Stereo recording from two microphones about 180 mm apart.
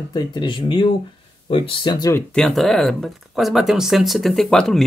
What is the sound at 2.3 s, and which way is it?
Speech, 5° left (ahead or behind).